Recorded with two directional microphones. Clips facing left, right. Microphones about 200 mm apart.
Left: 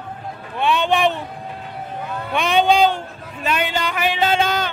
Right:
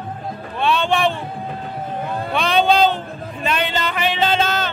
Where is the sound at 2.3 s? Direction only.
15° left (ahead or behind).